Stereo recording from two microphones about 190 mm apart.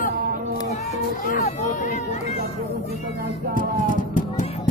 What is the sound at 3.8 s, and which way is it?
Run, 45° left (ahead or behind).